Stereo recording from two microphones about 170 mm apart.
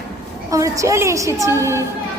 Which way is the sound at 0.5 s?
20° right (ahead or behind).